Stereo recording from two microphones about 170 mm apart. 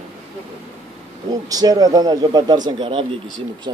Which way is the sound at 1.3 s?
20° right (ahead or behind).